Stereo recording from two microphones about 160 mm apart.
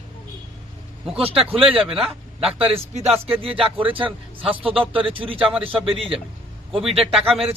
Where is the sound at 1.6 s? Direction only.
5° right (ahead or behind).